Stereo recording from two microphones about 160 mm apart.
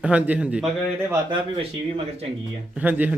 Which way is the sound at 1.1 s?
30° right (ahead or behind).